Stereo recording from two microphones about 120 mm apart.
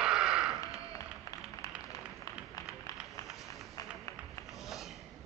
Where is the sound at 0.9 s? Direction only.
30° left (ahead or behind).